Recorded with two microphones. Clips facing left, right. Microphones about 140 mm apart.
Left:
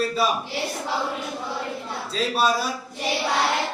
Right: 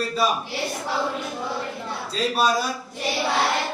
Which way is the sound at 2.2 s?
Centre (ahead or behind).